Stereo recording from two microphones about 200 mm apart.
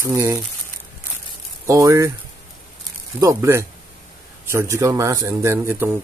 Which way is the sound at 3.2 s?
15° right (ahead or behind).